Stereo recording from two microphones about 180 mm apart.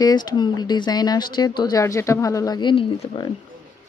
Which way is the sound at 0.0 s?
25° left (ahead or behind).